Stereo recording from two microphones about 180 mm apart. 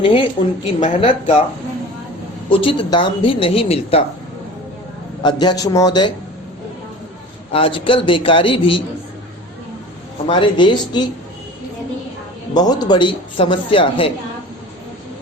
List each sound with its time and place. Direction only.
0.0 s speech: 30° left (ahead or behind)
2.5 s speech: 30° left (ahead or behind)
5.2 s speech: 25° left (ahead or behind)
7.5 s speech: 30° left (ahead or behind)
10.2 s speech: 25° left (ahead or behind)
12.5 s speech: 20° left (ahead or behind)